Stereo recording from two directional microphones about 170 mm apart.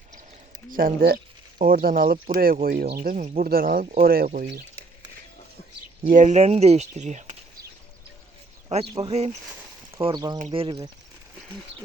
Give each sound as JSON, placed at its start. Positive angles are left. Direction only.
{"t": 0.7, "sound": "speech", "side_deg": -55}
{"t": 6.1, "sound": "speech", "side_deg": -45}
{"t": 8.7, "sound": "speech", "side_deg": -35}
{"t": 10.0, "sound": "speech", "side_deg": -25}